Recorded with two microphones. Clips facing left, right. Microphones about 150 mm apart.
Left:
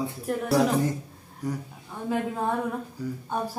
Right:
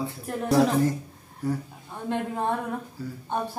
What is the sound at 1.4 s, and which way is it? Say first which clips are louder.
Speech: right 3 dB; 15° left (ahead or behind).